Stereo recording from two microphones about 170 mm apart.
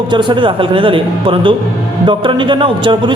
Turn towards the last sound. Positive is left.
turn(degrees=-30)  # may be behind; listen again after turning